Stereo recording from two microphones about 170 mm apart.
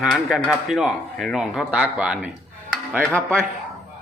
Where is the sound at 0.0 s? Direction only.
Centre (ahead or behind).